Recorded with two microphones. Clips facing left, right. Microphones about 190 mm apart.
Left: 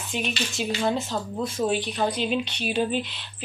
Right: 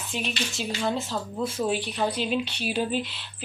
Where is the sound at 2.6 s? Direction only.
5° right (ahead or behind).